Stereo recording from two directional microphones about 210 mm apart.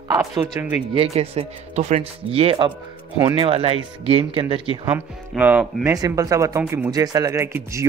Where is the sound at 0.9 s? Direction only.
30° right (ahead or behind).